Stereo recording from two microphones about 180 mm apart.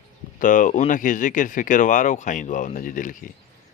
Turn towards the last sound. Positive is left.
turn(degrees=50)  # may be behind; listen again after turning